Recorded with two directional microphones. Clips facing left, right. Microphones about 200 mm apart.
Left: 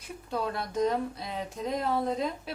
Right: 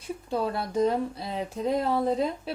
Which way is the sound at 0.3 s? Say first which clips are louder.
Right 3 dB; 30° right (ahead or behind).